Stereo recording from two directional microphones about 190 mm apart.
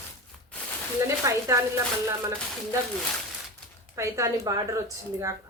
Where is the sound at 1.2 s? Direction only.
15° right (ahead or behind).